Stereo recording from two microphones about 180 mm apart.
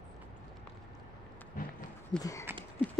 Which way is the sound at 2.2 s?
20° left (ahead or behind).